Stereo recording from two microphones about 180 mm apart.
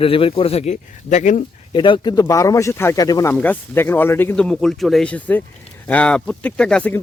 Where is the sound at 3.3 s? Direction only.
10° left (ahead or behind).